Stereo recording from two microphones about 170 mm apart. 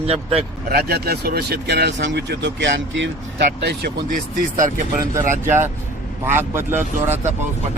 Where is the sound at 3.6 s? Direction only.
75° right (ahead or behind).